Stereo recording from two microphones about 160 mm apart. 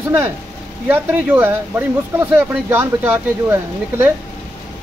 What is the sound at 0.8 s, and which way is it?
Speech, 10° right (ahead or behind).